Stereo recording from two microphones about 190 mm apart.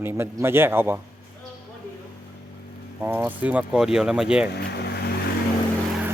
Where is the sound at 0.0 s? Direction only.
15° right (ahead or behind).